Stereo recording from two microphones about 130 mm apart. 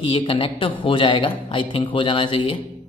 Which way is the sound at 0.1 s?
40° left (ahead or behind).